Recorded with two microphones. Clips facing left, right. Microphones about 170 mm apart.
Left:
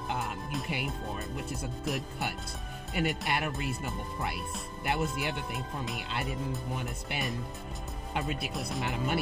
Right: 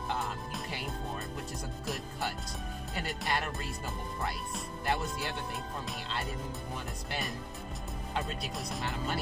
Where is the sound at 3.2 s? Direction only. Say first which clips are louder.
Left 2 dB; 10° left (ahead or behind).